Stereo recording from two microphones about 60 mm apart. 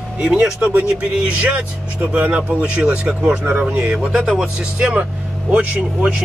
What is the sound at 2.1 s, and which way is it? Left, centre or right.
Speech, right.